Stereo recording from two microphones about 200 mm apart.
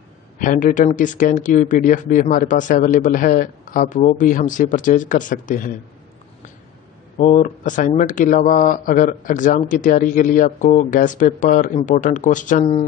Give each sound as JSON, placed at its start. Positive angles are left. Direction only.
{"t": 0.4, "sound": "speech", "side_deg": 40}
{"t": 7.2, "sound": "speech", "side_deg": 40}